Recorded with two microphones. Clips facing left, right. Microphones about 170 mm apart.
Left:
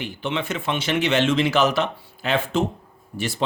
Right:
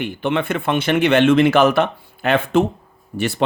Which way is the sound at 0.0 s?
55° right (ahead or behind).